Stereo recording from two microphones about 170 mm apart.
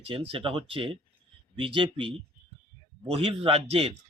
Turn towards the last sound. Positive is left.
turn(degrees=-35)  # may be behind; listen again after turning